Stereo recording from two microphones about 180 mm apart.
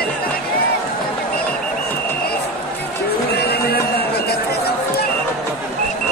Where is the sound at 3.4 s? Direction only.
60° left (ahead or behind).